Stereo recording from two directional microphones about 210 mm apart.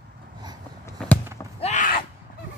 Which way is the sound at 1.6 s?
35° left (ahead or behind).